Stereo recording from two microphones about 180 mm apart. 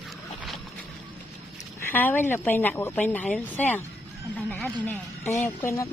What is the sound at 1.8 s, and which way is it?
Speech, 10° left (ahead or behind).